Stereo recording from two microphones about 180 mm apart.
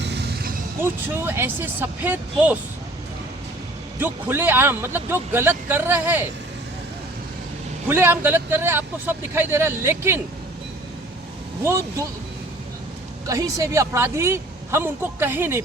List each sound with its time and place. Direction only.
0.0 s a sound: 70° right (ahead or behind)
0.8 s a woman's voice: 10° right (ahead or behind)
4.0 s a woman's voice: 10° right (ahead or behind)
7.9 s a woman's voice: 10° right (ahead or behind)
13.2 s a woman's voice: 20° right (ahead or behind)